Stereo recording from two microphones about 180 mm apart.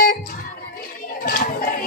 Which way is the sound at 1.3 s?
55° left (ahead or behind).